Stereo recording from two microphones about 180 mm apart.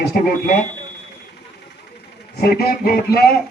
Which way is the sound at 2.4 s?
60° left (ahead or behind).